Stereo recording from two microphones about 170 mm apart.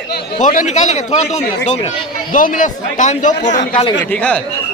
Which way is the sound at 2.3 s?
50° left (ahead or behind).